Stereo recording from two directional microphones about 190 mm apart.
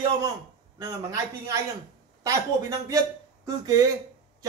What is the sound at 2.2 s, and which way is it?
Speech, 15° right (ahead or behind).